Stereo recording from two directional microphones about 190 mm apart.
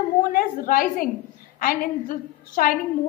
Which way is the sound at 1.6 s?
45° left (ahead or behind).